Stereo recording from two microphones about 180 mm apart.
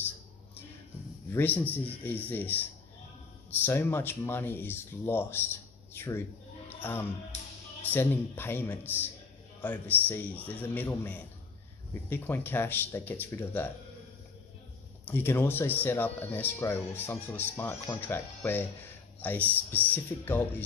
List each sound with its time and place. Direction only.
1.3 s speech: 10° left (ahead or behind)
7.3 s music: 40° left (ahead or behind)
7.9 s speech: 10° left (ahead or behind)
15.0 s speech: 10° left (ahead or behind)